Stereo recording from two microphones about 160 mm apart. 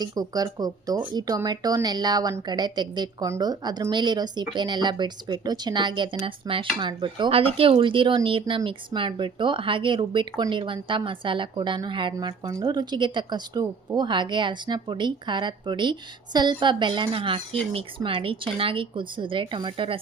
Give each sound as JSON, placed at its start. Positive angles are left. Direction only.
{"t": 0.0, "sound": "speech", "side_deg": -25}
{"t": 12.1, "sound": "speech", "side_deg": -20}